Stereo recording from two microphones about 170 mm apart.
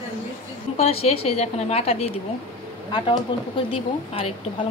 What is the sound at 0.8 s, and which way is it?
A woman's voice, 35° left (ahead or behind).